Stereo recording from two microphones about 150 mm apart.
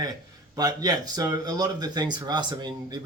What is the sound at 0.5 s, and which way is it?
Speech, 25° right (ahead or behind).